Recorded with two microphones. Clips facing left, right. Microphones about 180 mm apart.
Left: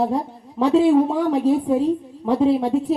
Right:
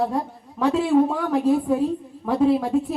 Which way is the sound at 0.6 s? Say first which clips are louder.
Left 2 dB; 35° left (ahead or behind).